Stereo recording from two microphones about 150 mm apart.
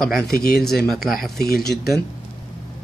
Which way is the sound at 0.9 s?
70° left (ahead or behind).